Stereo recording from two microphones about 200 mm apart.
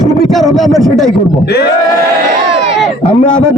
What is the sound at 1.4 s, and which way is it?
Speech, 55° left (ahead or behind).